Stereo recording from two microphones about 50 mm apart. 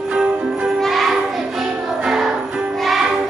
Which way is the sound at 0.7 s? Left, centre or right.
Centre.